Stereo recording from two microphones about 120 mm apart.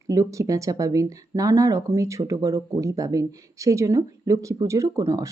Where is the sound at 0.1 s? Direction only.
25° right (ahead or behind).